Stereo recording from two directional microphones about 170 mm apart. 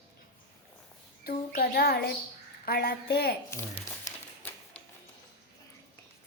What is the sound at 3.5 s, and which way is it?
Crumpling, 15° left (ahead or behind).